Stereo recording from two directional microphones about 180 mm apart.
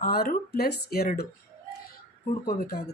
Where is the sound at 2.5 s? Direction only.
55° left (ahead or behind).